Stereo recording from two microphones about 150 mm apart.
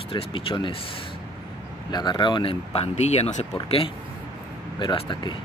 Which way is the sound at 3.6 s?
40° left (ahead or behind).